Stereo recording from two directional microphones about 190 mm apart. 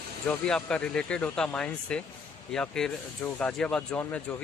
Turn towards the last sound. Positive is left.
turn(degrees=5)  # may be behind; listen again after turning